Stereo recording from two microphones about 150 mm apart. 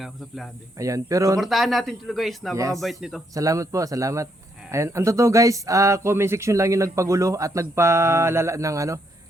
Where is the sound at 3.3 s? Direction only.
20° right (ahead or behind).